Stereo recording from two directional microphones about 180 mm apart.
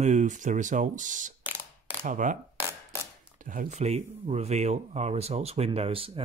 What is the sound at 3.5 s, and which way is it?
Speech, 45° right (ahead or behind).